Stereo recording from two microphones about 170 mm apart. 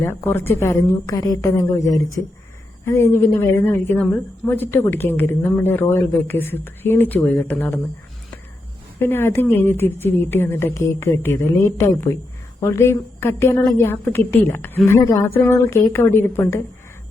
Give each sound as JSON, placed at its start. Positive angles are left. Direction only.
{"t": 0.0, "sound": "speech", "side_deg": 15}
{"t": 9.0, "sound": "speech", "side_deg": 15}